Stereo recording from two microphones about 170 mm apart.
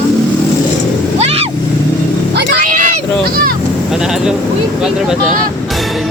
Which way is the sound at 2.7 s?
50° right (ahead or behind).